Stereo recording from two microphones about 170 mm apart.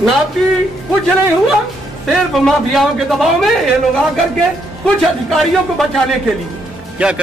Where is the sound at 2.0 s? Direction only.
Centre (ahead or behind).